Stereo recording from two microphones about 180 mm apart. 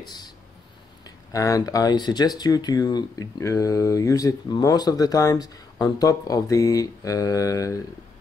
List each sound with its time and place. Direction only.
1.0 s speech: 20° left (ahead or behind)